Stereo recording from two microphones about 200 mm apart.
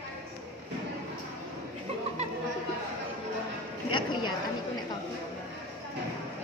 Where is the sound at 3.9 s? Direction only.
25° left (ahead or behind).